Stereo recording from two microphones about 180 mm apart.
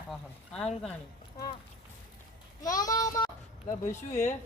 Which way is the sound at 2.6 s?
20° left (ahead or behind).